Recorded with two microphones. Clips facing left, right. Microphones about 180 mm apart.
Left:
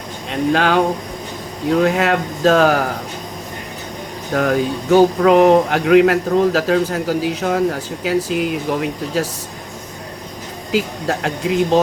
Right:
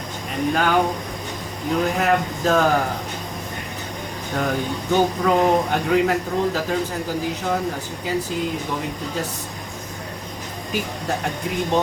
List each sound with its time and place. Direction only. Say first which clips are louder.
0.3 s speech: left 4 dB; 85° left
1.8 s speech: left 2 dB; 85° left
4.4 s speech: left 6 dB; 85° left
10.7 s speech: left 6 dB; 90° left